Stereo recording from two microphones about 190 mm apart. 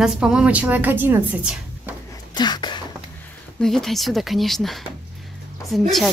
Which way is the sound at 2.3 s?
20° left (ahead or behind).